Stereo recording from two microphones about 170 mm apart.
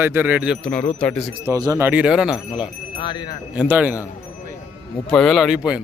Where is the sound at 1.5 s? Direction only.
20° right (ahead or behind).